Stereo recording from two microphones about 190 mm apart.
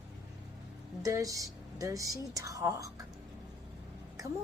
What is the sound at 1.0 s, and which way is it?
A woman's voice, 20° right (ahead or behind).